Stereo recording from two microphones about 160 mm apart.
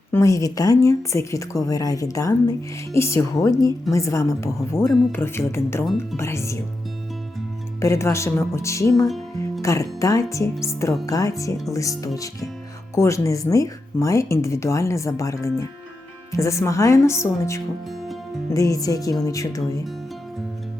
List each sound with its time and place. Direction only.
0.1 s a woman's voice: 20° left (ahead or behind)
7.8 s a woman's voice: 20° left (ahead or behind)